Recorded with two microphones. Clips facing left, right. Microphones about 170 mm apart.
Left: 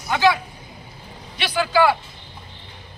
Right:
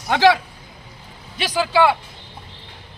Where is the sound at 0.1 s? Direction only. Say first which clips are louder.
Right 3 dB; 90° right.